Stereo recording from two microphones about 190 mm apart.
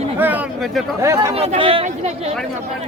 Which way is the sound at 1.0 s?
15° right (ahead or behind).